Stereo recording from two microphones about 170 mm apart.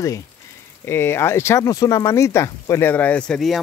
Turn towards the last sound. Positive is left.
turn(degrees=0)  # may be behind; listen again after turning